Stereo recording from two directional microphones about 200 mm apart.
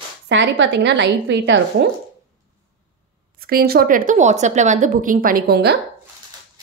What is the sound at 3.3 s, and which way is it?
A woman's voice, 50° right (ahead or behind).